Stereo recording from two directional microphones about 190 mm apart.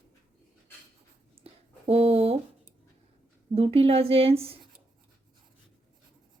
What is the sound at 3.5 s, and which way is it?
A woman's voice, 30° right (ahead or behind).